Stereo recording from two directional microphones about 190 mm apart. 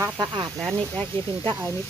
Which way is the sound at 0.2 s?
25° right (ahead or behind).